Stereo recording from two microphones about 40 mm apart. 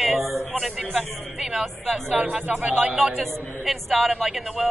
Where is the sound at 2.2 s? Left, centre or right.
Right.